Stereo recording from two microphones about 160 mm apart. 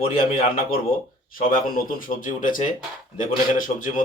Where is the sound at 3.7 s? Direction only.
55° left (ahead or behind).